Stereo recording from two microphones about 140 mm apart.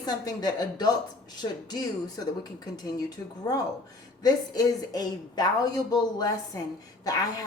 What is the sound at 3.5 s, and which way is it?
Speech, 30° left (ahead or behind).